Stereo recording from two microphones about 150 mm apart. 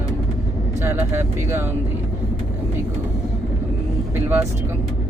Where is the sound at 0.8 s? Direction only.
15° right (ahead or behind).